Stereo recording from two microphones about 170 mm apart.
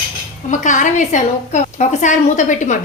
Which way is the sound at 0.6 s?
45° left (ahead or behind).